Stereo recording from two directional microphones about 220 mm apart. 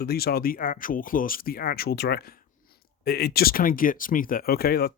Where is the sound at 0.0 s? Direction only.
45° left (ahead or behind).